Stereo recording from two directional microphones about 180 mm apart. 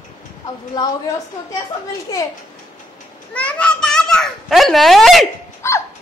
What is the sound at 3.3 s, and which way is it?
A child's voice, 5° left (ahead or behind).